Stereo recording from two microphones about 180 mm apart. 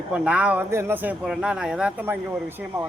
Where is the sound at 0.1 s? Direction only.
5° right (ahead or behind).